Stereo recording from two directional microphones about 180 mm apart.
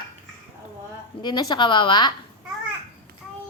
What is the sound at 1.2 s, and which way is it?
Speech, 25° left (ahead or behind).